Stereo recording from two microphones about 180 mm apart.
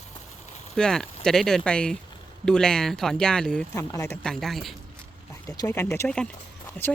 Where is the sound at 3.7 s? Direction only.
15° left (ahead or behind).